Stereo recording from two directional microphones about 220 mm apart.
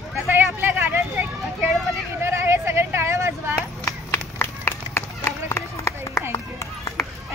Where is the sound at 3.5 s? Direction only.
10° left (ahead or behind).